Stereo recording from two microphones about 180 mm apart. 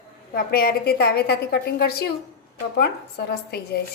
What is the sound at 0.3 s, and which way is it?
A woman's voice, 55° left (ahead or behind).